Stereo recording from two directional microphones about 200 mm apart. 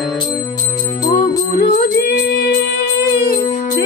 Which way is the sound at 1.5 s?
45° left (ahead or behind).